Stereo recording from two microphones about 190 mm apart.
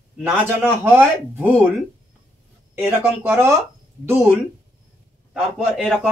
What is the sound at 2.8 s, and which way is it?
Speech, 10° right (ahead or behind).